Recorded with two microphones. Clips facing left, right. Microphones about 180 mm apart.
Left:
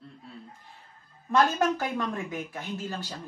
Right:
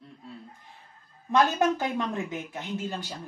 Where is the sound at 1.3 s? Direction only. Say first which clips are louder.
Right 1 dB; 20° right (ahead or behind).